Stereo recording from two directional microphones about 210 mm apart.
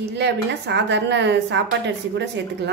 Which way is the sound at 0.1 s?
55° right (ahead or behind).